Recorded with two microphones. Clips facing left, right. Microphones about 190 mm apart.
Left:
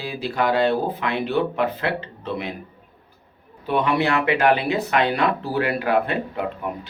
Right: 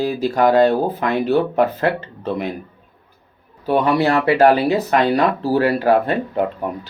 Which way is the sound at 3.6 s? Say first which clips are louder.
Right 5 dB; 40° right (ahead or behind).